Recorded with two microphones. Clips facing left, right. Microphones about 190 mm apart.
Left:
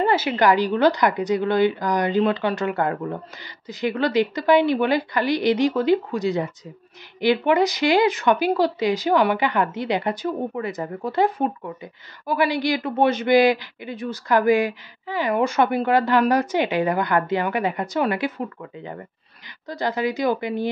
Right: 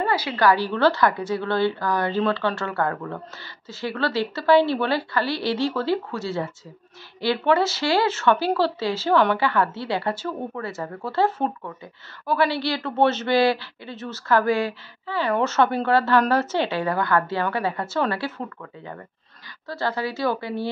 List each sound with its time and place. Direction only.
0.0 s speech: 25° left (ahead or behind)